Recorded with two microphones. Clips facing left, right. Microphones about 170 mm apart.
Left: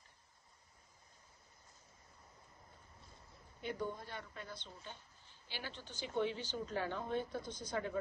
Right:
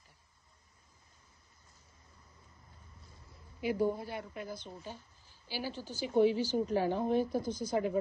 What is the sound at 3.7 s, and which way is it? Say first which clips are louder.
Speech: right 11 dB; 35° right (ahead or behind).